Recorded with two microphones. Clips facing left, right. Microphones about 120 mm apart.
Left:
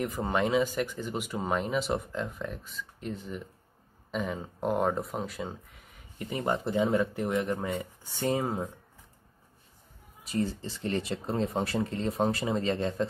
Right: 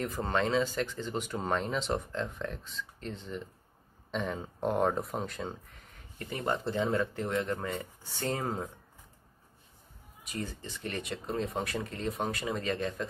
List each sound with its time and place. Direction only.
0.0 s speech: 10° left (ahead or behind)
6.3 s speech: 20° left (ahead or behind)
10.2 s speech: 30° left (ahead or behind)